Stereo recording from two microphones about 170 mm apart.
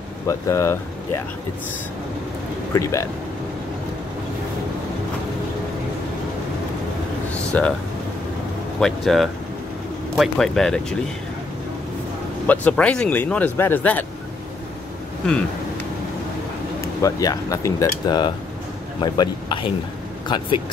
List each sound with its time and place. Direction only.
0.3 s speech: 15° left (ahead or behind)
2.7 s speech: 15° left (ahead or behind)
7.5 s speech: 10° left (ahead or behind)
8.7 s speech: centre (ahead or behind)
12.4 s speech: 10° left (ahead or behind)
17.0 s speech: 20° left (ahead or behind)